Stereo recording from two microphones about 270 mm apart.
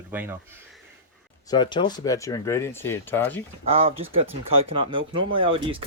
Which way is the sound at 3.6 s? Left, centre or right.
Right.